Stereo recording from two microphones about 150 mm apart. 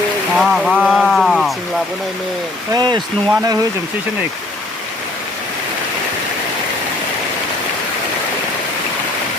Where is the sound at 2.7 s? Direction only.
30° right (ahead or behind).